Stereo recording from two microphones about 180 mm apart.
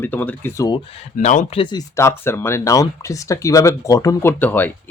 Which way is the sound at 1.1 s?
45° left (ahead or behind).